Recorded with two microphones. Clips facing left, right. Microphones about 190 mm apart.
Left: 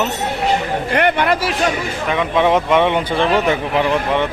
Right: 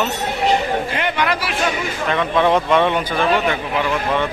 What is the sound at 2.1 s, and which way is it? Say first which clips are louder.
Speech: left 1 dB; 15° left (ahead or behind).